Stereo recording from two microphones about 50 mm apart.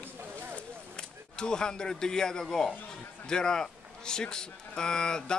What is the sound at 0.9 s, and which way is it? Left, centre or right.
A man's voice, centre.